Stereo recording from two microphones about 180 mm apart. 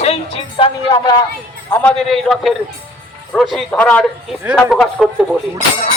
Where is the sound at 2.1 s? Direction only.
Centre (ahead or behind).